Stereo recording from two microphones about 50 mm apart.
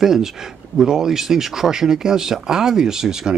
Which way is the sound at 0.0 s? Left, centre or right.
Centre.